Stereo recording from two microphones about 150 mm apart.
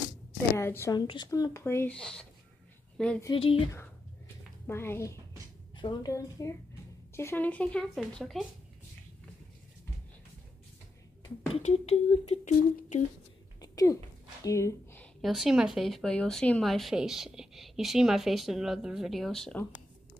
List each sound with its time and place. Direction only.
0.6 s a woman's voice: 15° left (ahead or behind)
0.9 s speech: 30° left (ahead or behind)
2.0 s speech: 5° left (ahead or behind)
3.3 s speech: 35° left (ahead or behind)
4.6 s a woman's voice: 15° left (ahead or behind)
11.6 s speech: 45° left (ahead or behind)
13.6 s a sound: 25° left (ahead or behind)
15.2 s speech: centre (ahead or behind)